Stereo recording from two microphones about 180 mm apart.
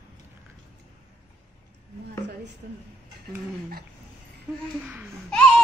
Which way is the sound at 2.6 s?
50° right (ahead or behind).